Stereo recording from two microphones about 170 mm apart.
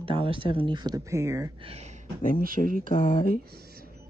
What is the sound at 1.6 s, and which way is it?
Speech, 35° right (ahead or behind).